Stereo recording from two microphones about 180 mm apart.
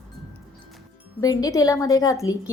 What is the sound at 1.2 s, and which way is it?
A woman's voice, 20° left (ahead or behind).